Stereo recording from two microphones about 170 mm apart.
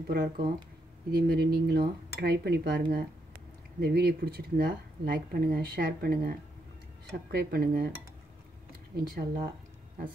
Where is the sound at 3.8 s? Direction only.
70° right (ahead or behind).